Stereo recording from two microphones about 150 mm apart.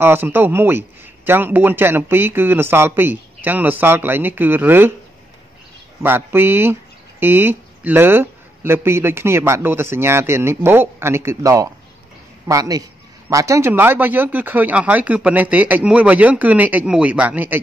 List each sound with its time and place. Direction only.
0.0 s speech: 15° right (ahead or behind)
6.0 s a man's voice: 15° right (ahead or behind)